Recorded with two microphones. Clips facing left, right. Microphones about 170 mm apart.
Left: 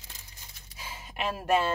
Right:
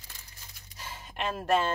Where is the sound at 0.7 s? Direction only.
10° left (ahead or behind).